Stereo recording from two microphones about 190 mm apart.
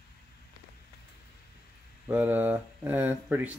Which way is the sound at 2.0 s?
10° right (ahead or behind).